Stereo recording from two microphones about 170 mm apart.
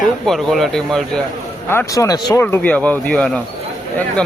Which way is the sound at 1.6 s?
15° left (ahead or behind).